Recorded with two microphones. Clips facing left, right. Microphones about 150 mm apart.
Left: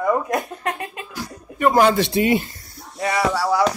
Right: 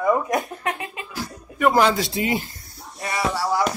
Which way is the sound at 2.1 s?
65° left (ahead or behind).